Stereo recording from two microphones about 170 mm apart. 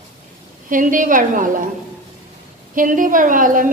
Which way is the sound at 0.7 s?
50° right (ahead or behind).